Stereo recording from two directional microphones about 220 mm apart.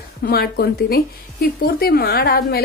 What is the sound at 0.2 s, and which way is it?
A woman's voice, 45° left (ahead or behind).